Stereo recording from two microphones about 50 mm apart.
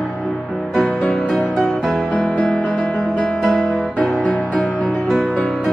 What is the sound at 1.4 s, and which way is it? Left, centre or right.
Music, left.